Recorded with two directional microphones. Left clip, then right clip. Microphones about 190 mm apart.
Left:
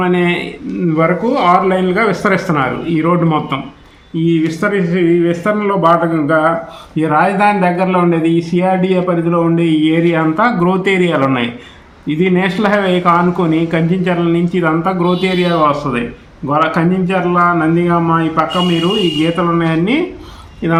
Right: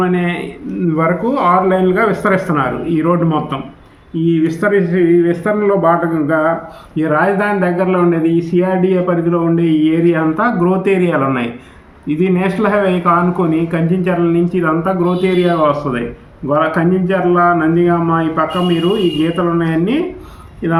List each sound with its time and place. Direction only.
0.0 s speech: 35° left (ahead or behind)